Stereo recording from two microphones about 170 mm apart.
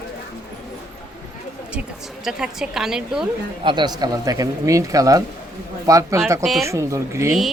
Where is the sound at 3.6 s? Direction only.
25° right (ahead or behind).